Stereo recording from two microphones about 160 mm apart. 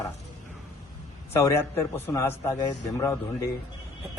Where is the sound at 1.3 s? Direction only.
15° left (ahead or behind).